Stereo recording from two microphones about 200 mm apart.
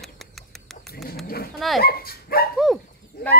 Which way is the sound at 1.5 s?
Centre (ahead or behind).